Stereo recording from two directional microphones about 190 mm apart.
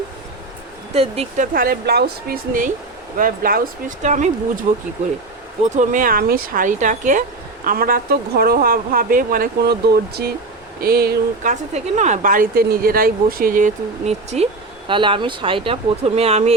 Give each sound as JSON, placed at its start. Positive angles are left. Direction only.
{"t": 0.9, "sound": "speech", "side_deg": -30}
{"t": 1.5, "sound": "speech", "side_deg": -55}
{"t": 5.7, "sound": "speech", "side_deg": -40}
{"t": 11.7, "sound": "speech", "side_deg": -40}